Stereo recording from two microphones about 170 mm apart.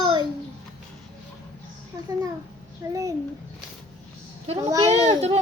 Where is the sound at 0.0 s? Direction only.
30° right (ahead or behind).